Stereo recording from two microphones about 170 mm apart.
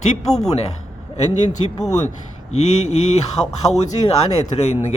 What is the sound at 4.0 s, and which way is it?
Speech, 35° left (ahead or behind).